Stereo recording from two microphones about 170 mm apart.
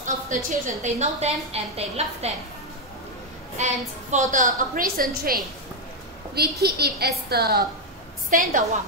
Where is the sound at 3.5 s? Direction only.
45° right (ahead or behind).